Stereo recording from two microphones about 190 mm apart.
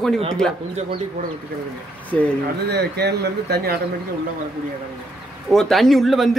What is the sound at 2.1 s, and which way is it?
Speech, 5° left (ahead or behind).